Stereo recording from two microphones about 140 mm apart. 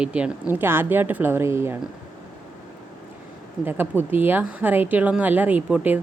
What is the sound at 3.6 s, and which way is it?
Speech, 15° right (ahead or behind).